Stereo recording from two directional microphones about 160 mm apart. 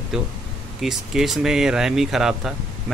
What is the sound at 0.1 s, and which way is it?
A man's voice, 5° right (ahead or behind).